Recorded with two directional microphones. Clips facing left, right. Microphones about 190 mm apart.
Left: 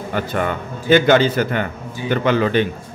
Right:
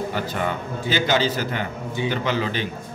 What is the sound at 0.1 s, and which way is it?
A man's voice, 55° left (ahead or behind).